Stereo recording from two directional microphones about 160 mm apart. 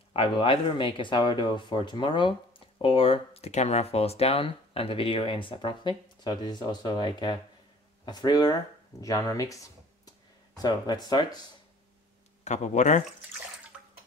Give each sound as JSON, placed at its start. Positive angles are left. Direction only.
{"t": 0.1, "sound": "speech", "side_deg": 35}
{"t": 12.4, "sound": "speech", "side_deg": 50}